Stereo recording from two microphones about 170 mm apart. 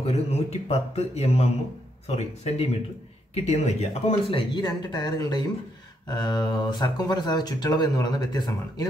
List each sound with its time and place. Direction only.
0.0 s a man's voice: 40° left (ahead or behind); by 8.8 s 25° left (ahead or behind)